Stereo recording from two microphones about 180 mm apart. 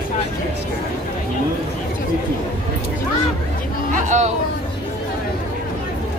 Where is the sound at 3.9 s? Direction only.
40° right (ahead or behind).